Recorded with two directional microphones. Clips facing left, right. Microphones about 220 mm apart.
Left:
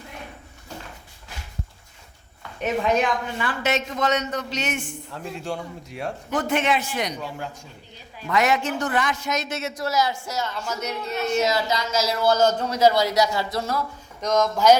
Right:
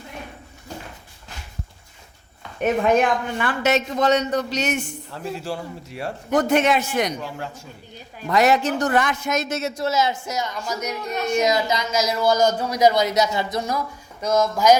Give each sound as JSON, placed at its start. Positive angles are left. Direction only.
{"t": 2.6, "sound": "a woman's voice", "side_deg": -50}
{"t": 3.7, "sound": "a man's voice", "side_deg": -35}
{"t": 5.1, "sound": "a man's voice", "side_deg": 0}
{"t": 6.3, "sound": "a woman's voice", "side_deg": -40}
{"t": 7.2, "sound": "a man's voice", "side_deg": 0}
{"t": 8.3, "sound": "a man's voice", "side_deg": -35}
{"t": 9.7, "sound": "speech", "side_deg": -25}